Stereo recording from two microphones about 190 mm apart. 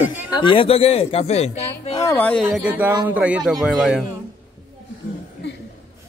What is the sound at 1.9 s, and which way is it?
Speech, 15° left (ahead or behind).